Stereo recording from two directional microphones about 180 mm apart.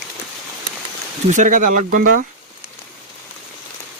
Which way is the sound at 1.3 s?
45° right (ahead or behind).